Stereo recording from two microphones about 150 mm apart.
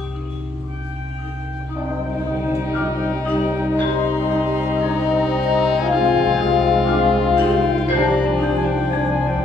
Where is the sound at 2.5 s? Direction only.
20° right (ahead or behind); by 7.7 s centre (ahead or behind).